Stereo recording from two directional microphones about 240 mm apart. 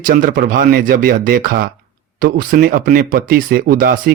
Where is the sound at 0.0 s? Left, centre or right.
Right.